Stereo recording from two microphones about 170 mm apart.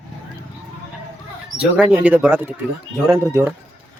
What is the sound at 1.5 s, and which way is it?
Speech, 5° right (ahead or behind).